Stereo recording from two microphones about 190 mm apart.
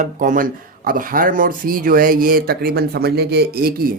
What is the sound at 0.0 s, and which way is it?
Speech, 45° right (ahead or behind).